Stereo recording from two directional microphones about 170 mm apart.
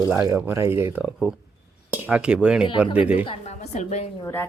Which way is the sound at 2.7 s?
30° left (ahead or behind).